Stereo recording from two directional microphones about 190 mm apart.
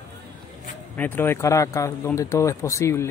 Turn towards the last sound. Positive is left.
turn(degrees=15)  # may be behind; listen again after turning